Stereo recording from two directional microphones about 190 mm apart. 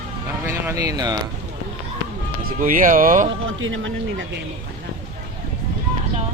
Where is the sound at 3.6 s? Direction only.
90° right.